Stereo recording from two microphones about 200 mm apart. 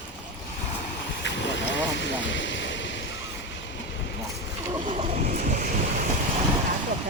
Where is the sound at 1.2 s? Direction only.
60° left (ahead or behind).